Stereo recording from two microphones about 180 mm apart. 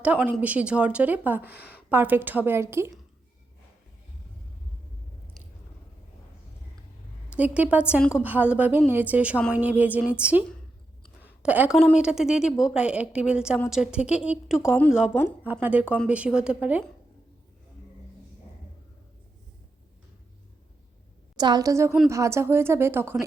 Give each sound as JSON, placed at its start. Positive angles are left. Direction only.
{"t": 0.0, "sound": "speech", "side_deg": -5}
{"t": 7.3, "sound": "a woman's voice", "side_deg": -10}
{"t": 15.6, "sound": "speech", "side_deg": -10}
{"t": 21.3, "sound": "a woman's voice", "side_deg": -25}